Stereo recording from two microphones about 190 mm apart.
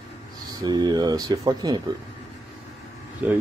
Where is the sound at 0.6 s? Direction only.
20° right (ahead or behind).